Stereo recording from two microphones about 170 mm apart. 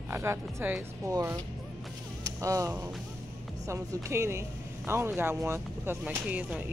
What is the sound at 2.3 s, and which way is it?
Speech, 20° right (ahead or behind).